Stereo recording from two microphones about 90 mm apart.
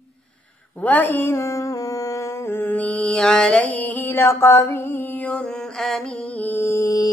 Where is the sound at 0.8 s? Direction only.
20° left (ahead or behind).